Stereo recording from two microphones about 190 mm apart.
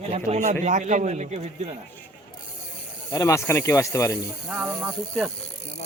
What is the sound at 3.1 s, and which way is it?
Speech, 15° left (ahead or behind).